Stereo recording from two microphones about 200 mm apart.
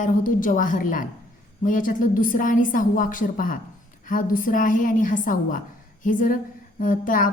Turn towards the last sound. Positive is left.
turn(degrees=45)  # may be behind; listen again after turning